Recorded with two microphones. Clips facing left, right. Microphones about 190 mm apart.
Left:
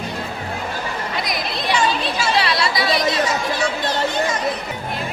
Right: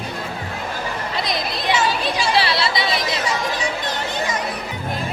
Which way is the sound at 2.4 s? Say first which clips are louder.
Left 1 dB; 30° right (ahead or behind).